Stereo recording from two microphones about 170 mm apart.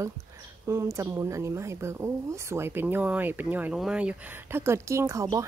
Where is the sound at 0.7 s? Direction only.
15° right (ahead or behind).